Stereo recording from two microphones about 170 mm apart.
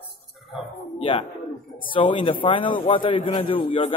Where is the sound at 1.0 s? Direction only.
30° left (ahead or behind).